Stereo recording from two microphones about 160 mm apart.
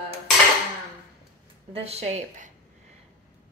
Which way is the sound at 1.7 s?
40° right (ahead or behind).